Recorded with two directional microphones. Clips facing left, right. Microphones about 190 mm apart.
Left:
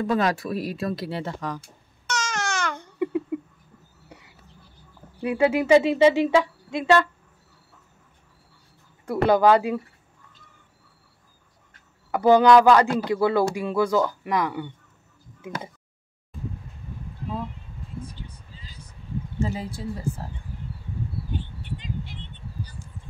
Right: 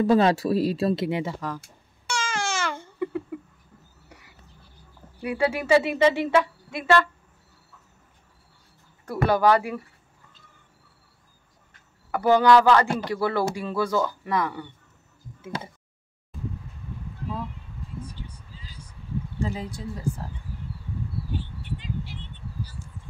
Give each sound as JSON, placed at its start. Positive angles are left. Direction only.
{"t": 0.0, "sound": "speech", "side_deg": -30}
{"t": 1.2, "sound": "speech", "side_deg": -5}
{"t": 2.0, "sound": "babbling", "side_deg": -5}
{"t": 2.8, "sound": "babbling", "side_deg": 20}
{"t": 5.2, "sound": "a woman's voice", "side_deg": 25}
{"t": 9.0, "sound": "speech", "side_deg": 20}
{"t": 12.1, "sound": "a woman's voice", "side_deg": 15}
{"t": 18.3, "sound": "vehicle", "side_deg": -10}
{"t": 19.4, "sound": "speech", "side_deg": 5}